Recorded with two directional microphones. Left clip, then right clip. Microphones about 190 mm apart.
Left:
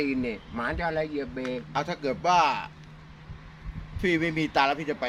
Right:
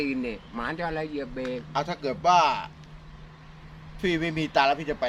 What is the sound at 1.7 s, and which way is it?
A man's voice, 5° right (ahead or behind).